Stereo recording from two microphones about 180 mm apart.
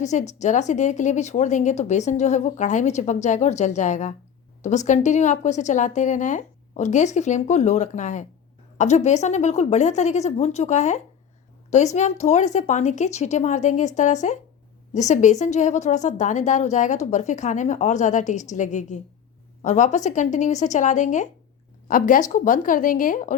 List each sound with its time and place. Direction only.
0.0 s a woman's voice: 40° left (ahead or behind)